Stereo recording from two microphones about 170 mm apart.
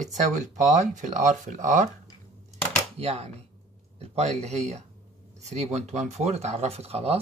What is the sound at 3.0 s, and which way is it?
Speech, 35° right (ahead or behind).